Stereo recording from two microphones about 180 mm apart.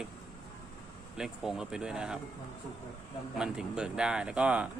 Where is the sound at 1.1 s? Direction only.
5° right (ahead or behind).